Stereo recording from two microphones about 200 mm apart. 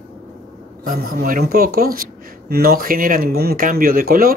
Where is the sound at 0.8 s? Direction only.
45° right (ahead or behind).